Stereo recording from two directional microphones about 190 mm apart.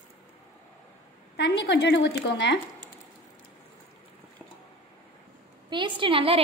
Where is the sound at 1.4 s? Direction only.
65° left (ahead or behind).